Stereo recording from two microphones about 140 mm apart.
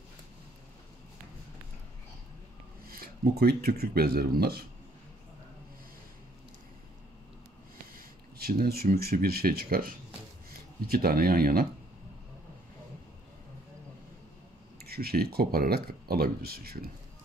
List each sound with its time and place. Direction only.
2.9 s speech: 90° right
7.9 s speech: 90° right
14.8 s speech: 90° right